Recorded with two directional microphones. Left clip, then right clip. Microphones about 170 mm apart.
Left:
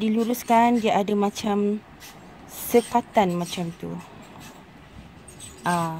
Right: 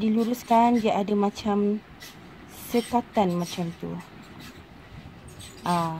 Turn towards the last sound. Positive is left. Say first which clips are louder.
# left 1 dB
turn(degrees=45)  # may be behind; listen again after turning